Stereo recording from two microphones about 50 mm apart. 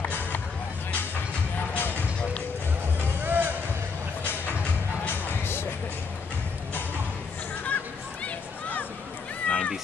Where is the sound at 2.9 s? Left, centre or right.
Right.